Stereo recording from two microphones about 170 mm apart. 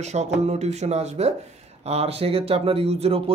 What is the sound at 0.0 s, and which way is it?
Speech, 40° right (ahead or behind).